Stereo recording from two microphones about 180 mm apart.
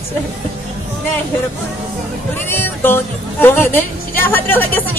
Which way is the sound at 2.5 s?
10° left (ahead or behind).